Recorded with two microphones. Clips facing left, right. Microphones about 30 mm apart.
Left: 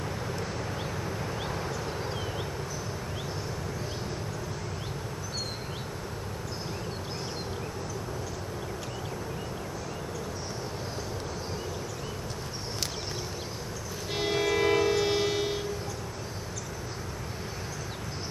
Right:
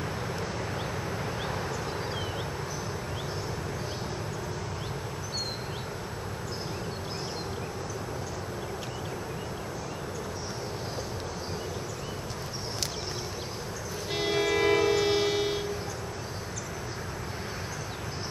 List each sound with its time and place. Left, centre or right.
14.1 s train: centre